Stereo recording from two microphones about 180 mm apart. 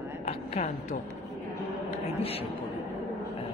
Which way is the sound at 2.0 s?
35° left (ahead or behind).